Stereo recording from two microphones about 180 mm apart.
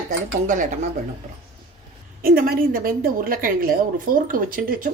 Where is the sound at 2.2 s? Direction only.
55° right (ahead or behind).